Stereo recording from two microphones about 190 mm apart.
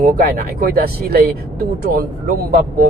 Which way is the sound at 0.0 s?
45° right (ahead or behind).